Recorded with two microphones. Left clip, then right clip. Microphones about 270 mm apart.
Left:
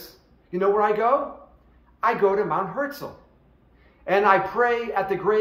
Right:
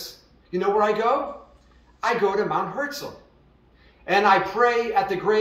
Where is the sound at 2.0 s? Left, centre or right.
Centre.